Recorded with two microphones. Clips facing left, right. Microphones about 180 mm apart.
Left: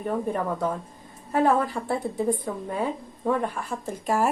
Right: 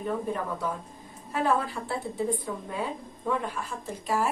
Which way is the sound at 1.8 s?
45° left (ahead or behind).